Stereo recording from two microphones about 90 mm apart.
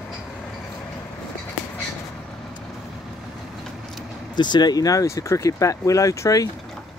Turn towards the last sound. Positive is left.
turn(degrees=40)  # may be behind; listen again after turning